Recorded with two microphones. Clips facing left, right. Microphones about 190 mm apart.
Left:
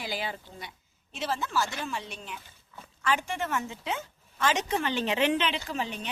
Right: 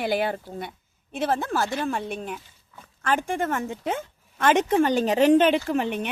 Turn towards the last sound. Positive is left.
turn(degrees=-55)  # may be behind; listen again after turning